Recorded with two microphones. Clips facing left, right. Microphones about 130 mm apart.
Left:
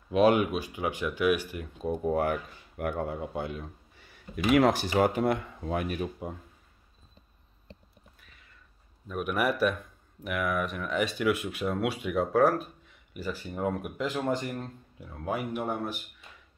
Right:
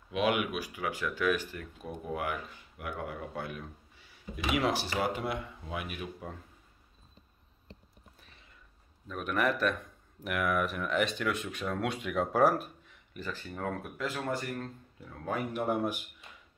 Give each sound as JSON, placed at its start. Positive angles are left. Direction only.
{"t": 0.1, "sound": "speech", "side_deg": 35}
{"t": 1.9, "sound": "speech", "side_deg": 40}
{"t": 3.0, "sound": "speech", "side_deg": 25}
{"t": 4.0, "sound": "speech", "side_deg": 50}
{"t": 9.0, "sound": "speech", "side_deg": 10}
{"t": 10.2, "sound": "speech", "side_deg": 0}
{"t": 13.1, "sound": "speech", "side_deg": 10}
{"t": 15.7, "sound": "speech", "side_deg": -10}